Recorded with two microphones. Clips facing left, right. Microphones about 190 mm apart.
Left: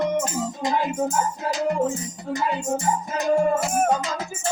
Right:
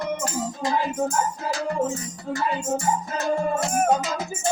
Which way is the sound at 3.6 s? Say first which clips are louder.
Even; centre (ahead or behind).